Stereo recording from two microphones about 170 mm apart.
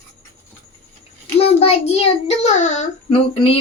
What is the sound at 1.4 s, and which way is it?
Child singing, 35° left (ahead or behind).